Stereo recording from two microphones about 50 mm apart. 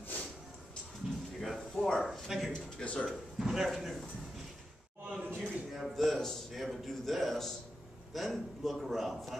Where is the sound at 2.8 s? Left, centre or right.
Left.